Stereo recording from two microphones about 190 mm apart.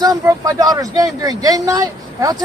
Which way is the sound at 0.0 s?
15° right (ahead or behind).